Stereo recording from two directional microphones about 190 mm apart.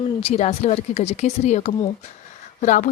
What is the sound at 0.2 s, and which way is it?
A woman's voice, 35° left (ahead or behind).